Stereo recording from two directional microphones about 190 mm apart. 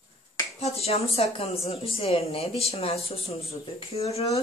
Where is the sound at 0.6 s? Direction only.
35° left (ahead or behind).